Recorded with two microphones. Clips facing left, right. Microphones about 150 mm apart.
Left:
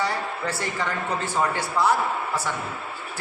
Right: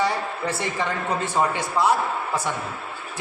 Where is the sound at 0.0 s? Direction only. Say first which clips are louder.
Right 2 dB; 20° right (ahead or behind).